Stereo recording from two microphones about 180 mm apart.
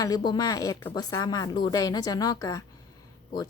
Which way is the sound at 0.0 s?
20° left (ahead or behind).